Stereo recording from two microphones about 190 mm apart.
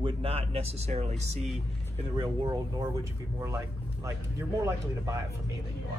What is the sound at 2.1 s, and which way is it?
A man's voice, 20° right (ahead or behind).